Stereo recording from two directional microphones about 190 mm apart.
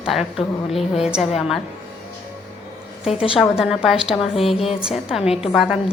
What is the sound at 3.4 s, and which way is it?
A woman's voice, 5° right (ahead or behind).